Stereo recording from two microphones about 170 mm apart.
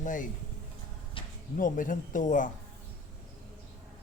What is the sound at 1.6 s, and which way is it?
Speech, 50° left (ahead or behind).